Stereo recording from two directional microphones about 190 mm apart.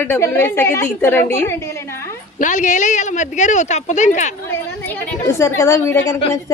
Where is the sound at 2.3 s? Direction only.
40° left (ahead or behind).